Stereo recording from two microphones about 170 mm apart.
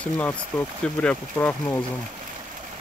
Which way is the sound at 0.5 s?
10° left (ahead or behind).